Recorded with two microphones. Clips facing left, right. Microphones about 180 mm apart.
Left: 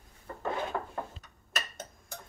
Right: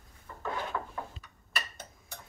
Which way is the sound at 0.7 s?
35° left (ahead or behind).